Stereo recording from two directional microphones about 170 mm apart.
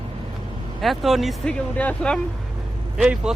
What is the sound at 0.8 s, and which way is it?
Speech, centre (ahead or behind).